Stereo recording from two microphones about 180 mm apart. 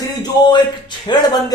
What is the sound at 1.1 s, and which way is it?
Speech, 25° left (ahead or behind).